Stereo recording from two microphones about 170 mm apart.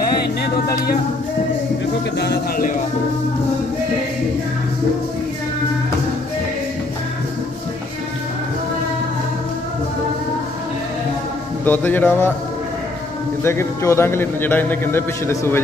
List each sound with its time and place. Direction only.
2.1 s speech: 75° left (ahead or behind)
11.6 s a man's voice: 10° left (ahead or behind)
13.4 s a man's voice: 15° left (ahead or behind)